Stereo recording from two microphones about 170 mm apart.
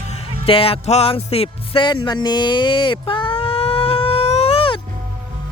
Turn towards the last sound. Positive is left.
turn(degrees=35)  # may be behind; listen again after turning